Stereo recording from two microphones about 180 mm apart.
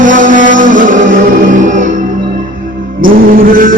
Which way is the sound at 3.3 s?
50° right (ahead or behind).